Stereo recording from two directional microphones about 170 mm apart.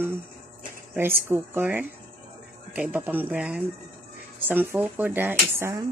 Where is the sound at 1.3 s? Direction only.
10° right (ahead or behind).